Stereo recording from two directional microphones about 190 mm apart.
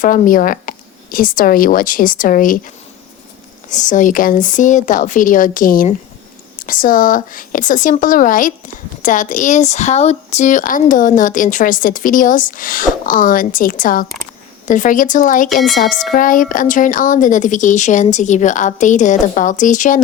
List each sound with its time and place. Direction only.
0.0 s speech: 45° left (ahead or behind)
3.7 s speech: 40° left (ahead or behind)